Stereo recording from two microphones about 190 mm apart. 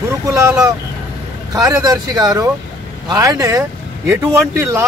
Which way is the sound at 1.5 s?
20° right (ahead or behind).